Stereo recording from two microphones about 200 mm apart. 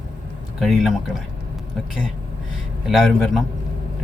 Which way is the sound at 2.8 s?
Centre (ahead or behind).